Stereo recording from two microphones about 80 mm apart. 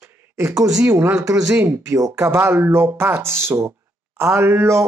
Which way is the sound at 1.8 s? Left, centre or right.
Right.